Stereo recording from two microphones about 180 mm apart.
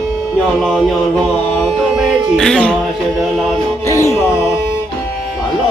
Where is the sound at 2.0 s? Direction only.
Centre (ahead or behind).